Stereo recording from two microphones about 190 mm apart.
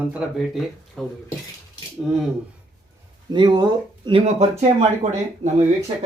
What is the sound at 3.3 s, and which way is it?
Speech, 25° right (ahead or behind).